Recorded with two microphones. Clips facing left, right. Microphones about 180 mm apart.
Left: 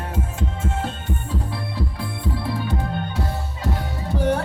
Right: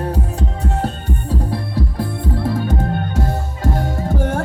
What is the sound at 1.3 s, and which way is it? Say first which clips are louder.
Music: right 6 dB; 40° right (ahead or behind).